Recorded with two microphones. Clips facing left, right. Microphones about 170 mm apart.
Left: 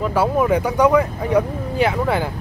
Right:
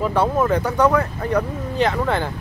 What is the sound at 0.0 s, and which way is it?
Speech, 5° left (ahead or behind).